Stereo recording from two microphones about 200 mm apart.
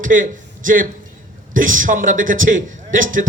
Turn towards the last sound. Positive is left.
turn(degrees=-40)  # may be behind; listen again after turning